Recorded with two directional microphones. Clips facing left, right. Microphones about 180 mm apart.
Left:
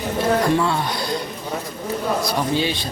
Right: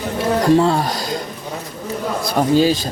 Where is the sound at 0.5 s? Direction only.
35° right (ahead or behind).